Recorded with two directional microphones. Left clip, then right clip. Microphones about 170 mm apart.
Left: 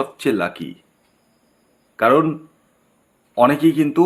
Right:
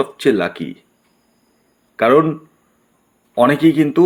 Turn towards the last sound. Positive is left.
turn(degrees=-15)  # may be behind; listen again after turning